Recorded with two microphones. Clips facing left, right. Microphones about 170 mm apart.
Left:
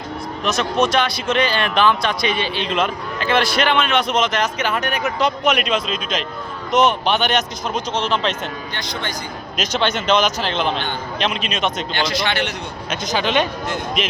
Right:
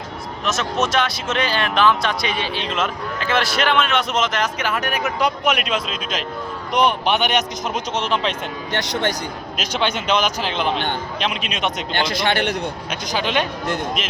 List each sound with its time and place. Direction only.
0.4 s speech: 5° right (ahead or behind)
9.6 s speech: 10° right (ahead or behind)
11.9 s speech: 55° right (ahead or behind)
13.1 s speech: 10° right (ahead or behind)